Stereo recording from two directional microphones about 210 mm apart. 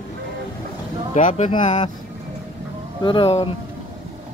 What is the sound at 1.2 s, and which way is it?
Speech, 35° left (ahead or behind).